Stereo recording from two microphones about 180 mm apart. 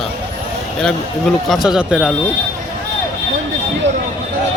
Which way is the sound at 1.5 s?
5° right (ahead or behind).